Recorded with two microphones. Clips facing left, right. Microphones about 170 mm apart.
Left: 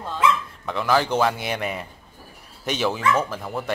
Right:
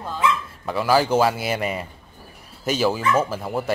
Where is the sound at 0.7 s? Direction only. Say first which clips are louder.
Right 3 dB; 5° right (ahead or behind).